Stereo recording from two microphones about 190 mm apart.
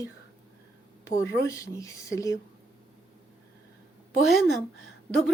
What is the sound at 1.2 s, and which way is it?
Speech, 15° left (ahead or behind).